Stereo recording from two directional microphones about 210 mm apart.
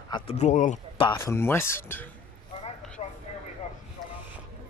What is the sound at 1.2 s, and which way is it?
Speech, 10° left (ahead or behind).